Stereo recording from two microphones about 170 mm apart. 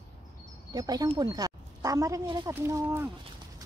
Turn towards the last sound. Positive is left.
turn(degrees=-15)  # may be behind; listen again after turning